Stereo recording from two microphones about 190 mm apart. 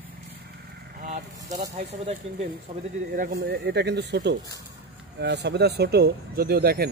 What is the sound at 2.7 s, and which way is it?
Speech, 30° right (ahead or behind).